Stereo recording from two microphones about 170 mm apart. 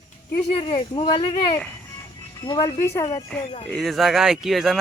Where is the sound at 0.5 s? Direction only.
30° left (ahead or behind).